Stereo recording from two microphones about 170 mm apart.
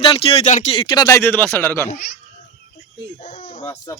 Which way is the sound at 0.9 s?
20° left (ahead or behind).